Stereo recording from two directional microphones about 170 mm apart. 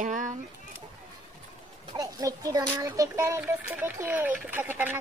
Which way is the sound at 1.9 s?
20° right (ahead or behind).